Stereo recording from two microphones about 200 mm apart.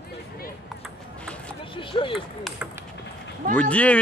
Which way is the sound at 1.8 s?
25° left (ahead or behind).